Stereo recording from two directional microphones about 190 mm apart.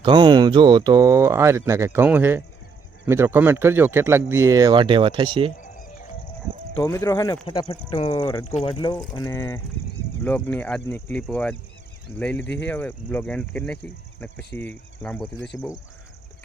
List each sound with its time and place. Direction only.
0.0 s speech: 25° right (ahead or behind)
5.5 s music: 45° left (ahead or behind)
6.7 s speech: 15° left (ahead or behind)
8.4 s speech: 30° left (ahead or behind)